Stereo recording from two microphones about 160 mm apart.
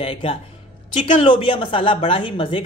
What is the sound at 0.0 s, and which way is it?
Speech, 35° left (ahead or behind).